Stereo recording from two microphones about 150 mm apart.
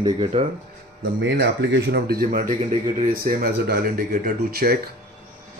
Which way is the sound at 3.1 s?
90° right.